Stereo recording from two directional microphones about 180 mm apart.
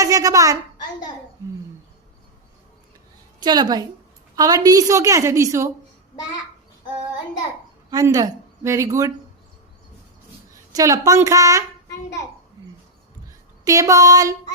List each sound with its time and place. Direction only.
0.0 s a woman's voice: 20° right (ahead or behind)
3.4 s a sound: 25° right (ahead or behind)
4.4 s a woman's voice: 20° right (ahead or behind)
7.9 s speech: 20° right (ahead or behind)
10.5 s a woman's voice: 20° right (ahead or behind)
13.7 s a sound: 20° right (ahead or behind)